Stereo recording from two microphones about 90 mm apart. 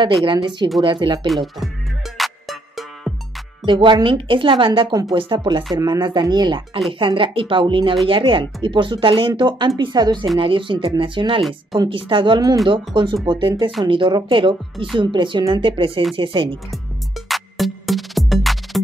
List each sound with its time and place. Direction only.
0.0 s speech: 60° right (ahead or behind)
1.2 s speech: centre (ahead or behind)
2.1 s music: centre (ahead or behind)
3.6 s speech: 65° right (ahead or behind)
5.8 s speech: 50° right (ahead or behind)
6.9 s speech: 75° right (ahead or behind); by 10.2 s 55° right (ahead or behind)
10.4 s speech: 70° right (ahead or behind)
17.3 s music: centre (ahead or behind)